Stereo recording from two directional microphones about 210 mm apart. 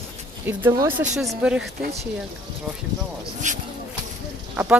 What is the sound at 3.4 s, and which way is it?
Speech, 35° right (ahead or behind).